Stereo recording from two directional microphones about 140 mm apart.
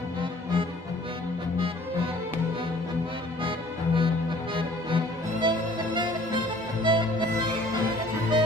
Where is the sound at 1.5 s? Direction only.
40° right (ahead or behind).